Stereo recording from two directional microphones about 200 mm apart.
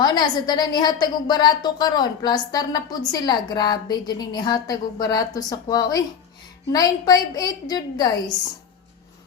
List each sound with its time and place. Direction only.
0.0 s a woman's voice: 20° left (ahead or behind)